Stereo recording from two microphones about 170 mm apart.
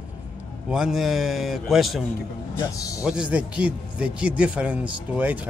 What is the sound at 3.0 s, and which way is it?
A man's voice, 5° right (ahead or behind).